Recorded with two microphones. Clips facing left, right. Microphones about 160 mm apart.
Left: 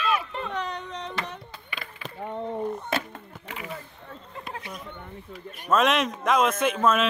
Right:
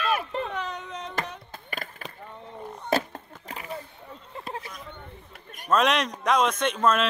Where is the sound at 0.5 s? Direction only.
5° right (ahead or behind).